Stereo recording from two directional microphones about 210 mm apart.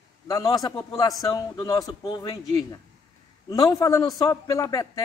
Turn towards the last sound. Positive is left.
turn(degrees=15)  # may be behind; listen again after turning